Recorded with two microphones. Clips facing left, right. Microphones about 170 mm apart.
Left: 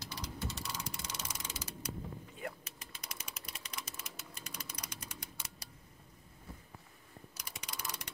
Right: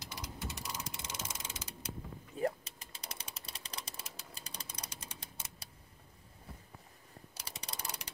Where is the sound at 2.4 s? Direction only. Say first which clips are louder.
Right 13 dB; 35° right (ahead or behind).